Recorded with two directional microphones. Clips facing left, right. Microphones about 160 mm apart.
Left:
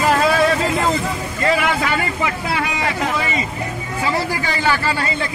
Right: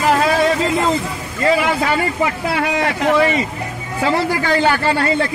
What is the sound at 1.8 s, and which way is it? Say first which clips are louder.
Speech: right 3 dB; 35° right (ahead or behind).